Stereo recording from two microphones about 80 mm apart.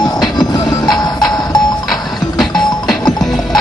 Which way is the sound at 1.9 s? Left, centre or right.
Centre.